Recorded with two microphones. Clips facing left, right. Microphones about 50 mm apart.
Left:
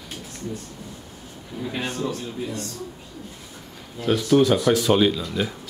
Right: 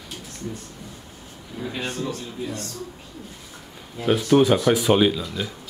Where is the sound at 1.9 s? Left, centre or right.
Centre.